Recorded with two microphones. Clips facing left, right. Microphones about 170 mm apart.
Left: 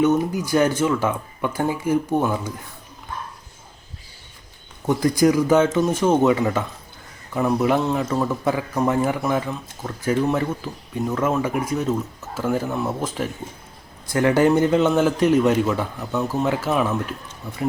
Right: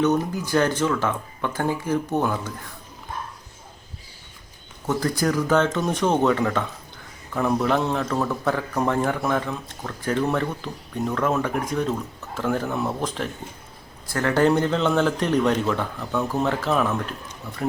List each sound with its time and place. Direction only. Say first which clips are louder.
0.0 s a man's voice: left 3 dB; 10° left (ahead or behind)
4.9 s a man's voice: left 5 dB; 15° left (ahead or behind)